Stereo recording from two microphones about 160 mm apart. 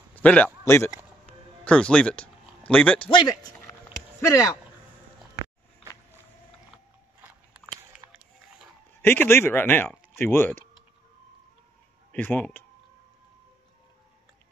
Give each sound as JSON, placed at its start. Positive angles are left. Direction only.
{"t": 0.1, "sound": "a man's voice", "side_deg": 10}
{"t": 0.7, "sound": "music", "side_deg": 15}
{"t": 3.1, "sound": "speech", "side_deg": 25}
{"t": 7.2, "sound": "biting", "side_deg": -10}
{"t": 7.9, "sound": "a sound", "side_deg": -10}
{"t": 9.0, "sound": "speech", "side_deg": 15}
{"t": 12.1, "sound": "speech", "side_deg": 10}